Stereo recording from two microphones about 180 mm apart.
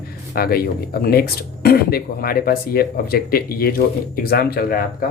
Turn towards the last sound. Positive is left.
turn(degrees=55)  # may be behind; listen again after turning